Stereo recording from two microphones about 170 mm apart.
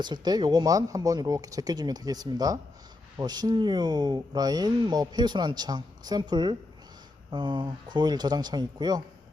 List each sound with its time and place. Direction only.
0.0 s speech: 25° right (ahead or behind)